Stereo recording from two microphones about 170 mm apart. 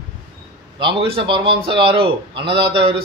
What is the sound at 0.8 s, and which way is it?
A man's voice, 30° right (ahead or behind).